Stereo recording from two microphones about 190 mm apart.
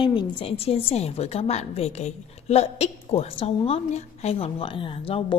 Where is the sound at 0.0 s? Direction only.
25° left (ahead or behind).